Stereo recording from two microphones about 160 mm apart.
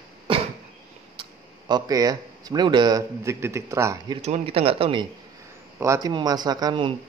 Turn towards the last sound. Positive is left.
turn(degrees=-30)  # may be behind; listen again after turning